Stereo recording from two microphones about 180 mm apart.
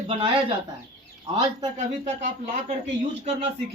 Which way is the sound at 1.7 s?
40° right (ahead or behind).